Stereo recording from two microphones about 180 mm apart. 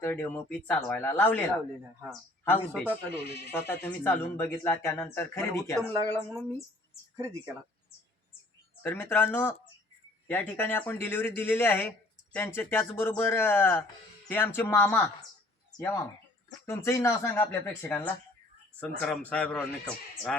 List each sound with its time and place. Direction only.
0.0 s speech: 10° left (ahead or behind)
3.2 s speech: 65° left (ahead or behind)
3.5 s speech: 15° left (ahead or behind)
7.2 s speech: 15° right (ahead or behind)
8.8 s speech: 10° left (ahead or behind)
16.6 s speech: 15° left (ahead or behind)